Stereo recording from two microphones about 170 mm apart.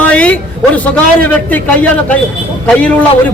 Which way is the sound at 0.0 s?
5° left (ahead or behind).